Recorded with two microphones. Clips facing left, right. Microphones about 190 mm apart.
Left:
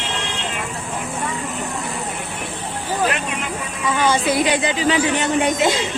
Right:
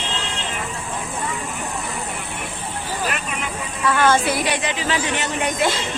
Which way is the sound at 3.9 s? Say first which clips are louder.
Right 1 dB; 15° left (ahead or behind).